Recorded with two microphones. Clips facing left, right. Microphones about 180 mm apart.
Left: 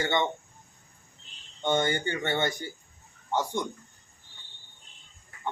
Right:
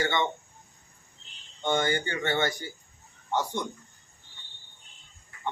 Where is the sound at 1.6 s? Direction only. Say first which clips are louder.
Even; 20° left (ahead or behind).